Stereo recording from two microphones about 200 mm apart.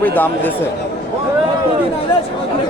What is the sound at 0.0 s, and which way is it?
Speech, 10° left (ahead or behind).